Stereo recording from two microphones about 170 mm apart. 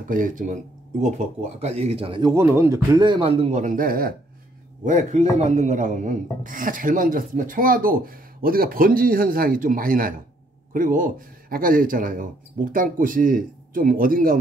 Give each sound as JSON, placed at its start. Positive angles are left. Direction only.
{"t": 0.1, "sound": "speech", "side_deg": -50}
{"t": 4.8, "sound": "speech", "side_deg": -45}